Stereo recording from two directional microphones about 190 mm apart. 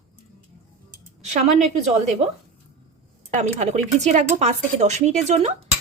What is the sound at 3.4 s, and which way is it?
Dishes, 35° right (ahead or behind).